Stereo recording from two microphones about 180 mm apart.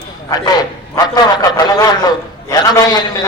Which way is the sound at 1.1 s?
20° left (ahead or behind).